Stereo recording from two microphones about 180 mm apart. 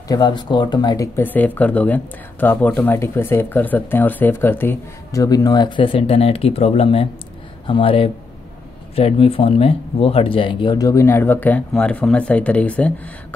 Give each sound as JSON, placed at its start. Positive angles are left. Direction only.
{"t": 0.1, "sound": "speech", "side_deg": 25}